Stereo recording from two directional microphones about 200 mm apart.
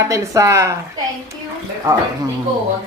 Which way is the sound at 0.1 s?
15° right (ahead or behind).